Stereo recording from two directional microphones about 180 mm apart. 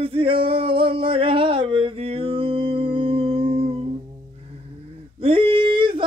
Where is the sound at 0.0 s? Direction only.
30° right (ahead or behind).